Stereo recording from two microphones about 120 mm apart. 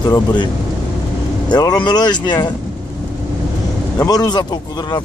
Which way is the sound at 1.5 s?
35° left (ahead or behind).